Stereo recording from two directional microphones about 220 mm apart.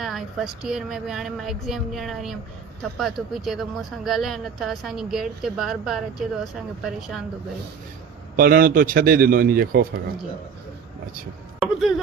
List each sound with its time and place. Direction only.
0.0 s speech: centre (ahead or behind)
8.4 s a man's voice: 40° right (ahead or behind)
11.6 s speech: centre (ahead or behind)